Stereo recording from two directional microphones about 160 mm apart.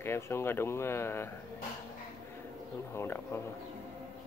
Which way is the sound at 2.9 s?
15° left (ahead or behind).